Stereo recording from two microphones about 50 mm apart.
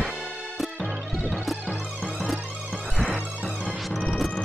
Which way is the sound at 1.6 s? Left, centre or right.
Left.